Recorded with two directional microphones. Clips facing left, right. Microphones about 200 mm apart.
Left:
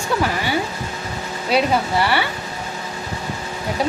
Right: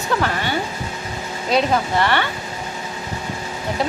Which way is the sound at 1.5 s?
10° left (ahead or behind).